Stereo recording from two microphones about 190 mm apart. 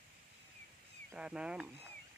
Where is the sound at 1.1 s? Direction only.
5° right (ahead or behind).